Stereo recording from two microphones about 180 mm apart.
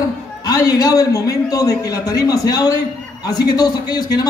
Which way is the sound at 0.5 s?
20° left (ahead or behind).